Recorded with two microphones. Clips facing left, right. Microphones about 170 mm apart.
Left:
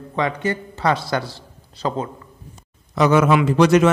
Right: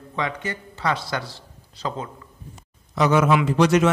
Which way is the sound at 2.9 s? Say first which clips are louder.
Left 3 dB; 70° left (ahead or behind).